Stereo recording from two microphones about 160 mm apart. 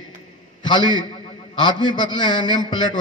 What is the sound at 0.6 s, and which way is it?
A man's voice, 30° left (ahead or behind).